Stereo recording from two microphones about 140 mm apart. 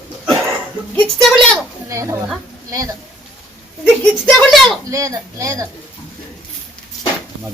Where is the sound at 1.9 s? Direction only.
20° right (ahead or behind).